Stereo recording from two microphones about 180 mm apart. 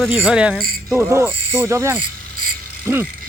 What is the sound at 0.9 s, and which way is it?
Pulleys, 10° right (ahead or behind).